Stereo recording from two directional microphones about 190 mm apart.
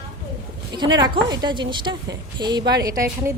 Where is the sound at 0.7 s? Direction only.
20° right (ahead or behind).